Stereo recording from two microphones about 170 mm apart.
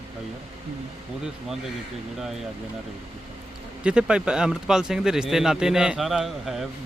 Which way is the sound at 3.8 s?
5° right (ahead or behind).